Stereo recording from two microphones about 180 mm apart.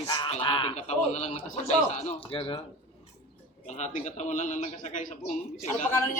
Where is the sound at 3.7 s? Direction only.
40° left (ahead or behind).